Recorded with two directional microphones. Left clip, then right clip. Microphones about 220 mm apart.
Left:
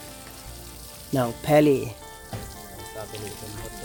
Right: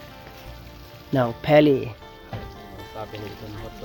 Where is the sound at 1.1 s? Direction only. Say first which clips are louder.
Right 3 dB; 5° right (ahead or behind).